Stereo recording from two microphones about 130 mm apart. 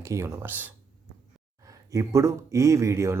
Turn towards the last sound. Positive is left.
turn(degrees=-20)  # may be behind; listen again after turning